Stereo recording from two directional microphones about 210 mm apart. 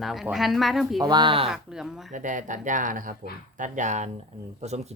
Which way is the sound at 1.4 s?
Centre (ahead or behind).